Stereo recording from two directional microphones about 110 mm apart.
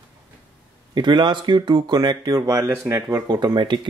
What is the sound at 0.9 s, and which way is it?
Speech, 45° right (ahead or behind).